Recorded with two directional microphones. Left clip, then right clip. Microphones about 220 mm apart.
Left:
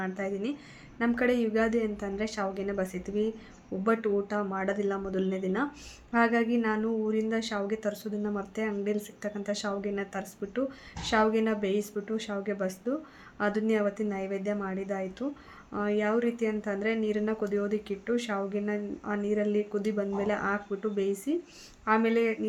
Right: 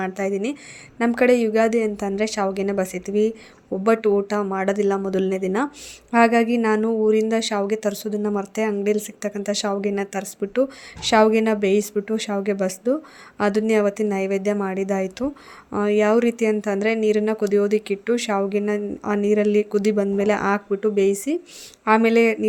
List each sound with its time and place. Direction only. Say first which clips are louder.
0.0 s speech: right 9 dB; 40° right (ahead or behind)